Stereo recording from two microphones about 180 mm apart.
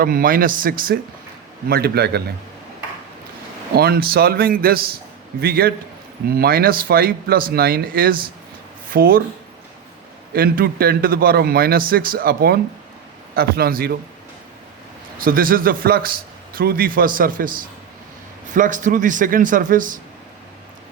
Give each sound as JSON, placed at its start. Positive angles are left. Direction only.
{"t": 0.0, "sound": "a man's voice", "side_deg": -55}
{"t": 3.8, "sound": "a man's voice", "side_deg": -55}
{"t": 10.3, "sound": "a man's voice", "side_deg": -55}
{"t": 15.2, "sound": "a man's voice", "side_deg": -50}